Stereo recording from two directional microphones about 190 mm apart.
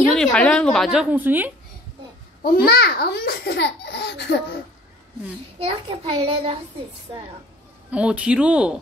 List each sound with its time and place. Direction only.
0.1 s a woman's voice: 5° left (ahead or behind)
2.4 s a child's voice: 55° left (ahead or behind)
5.6 s a child's voice: 25° right (ahead or behind)
7.9 s speech: 5° right (ahead or behind)